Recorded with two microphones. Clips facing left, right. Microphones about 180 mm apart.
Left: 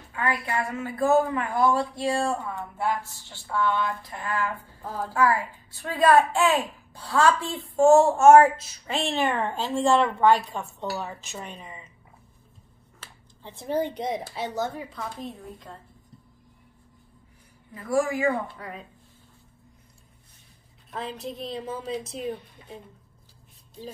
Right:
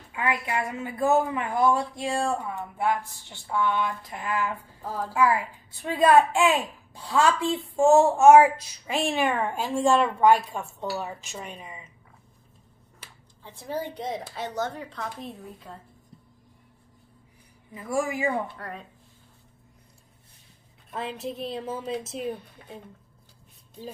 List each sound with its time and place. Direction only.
0.1 s speech: 15° right (ahead or behind)
4.8 s a woman's voice: 5° right (ahead or behind)
5.1 s speech: 20° right (ahead or behind)
13.4 s speech: 20° left (ahead or behind); by 15.8 s centre (ahead or behind)
17.9 s speech: 20° right (ahead or behind)
18.6 s a woman's voice: centre (ahead or behind)
20.9 s a woman's voice: centre (ahead or behind)